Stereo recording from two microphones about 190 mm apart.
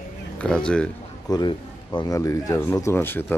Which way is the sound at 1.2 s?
25° left (ahead or behind).